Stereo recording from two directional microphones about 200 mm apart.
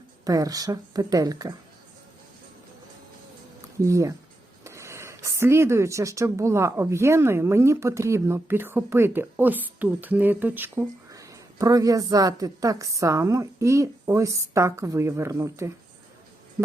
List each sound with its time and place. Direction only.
0.3 s speech: 20° right (ahead or behind)
3.8 s speech: 15° right (ahead or behind)